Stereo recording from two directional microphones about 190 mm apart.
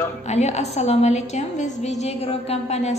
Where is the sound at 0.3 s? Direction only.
35° left (ahead or behind).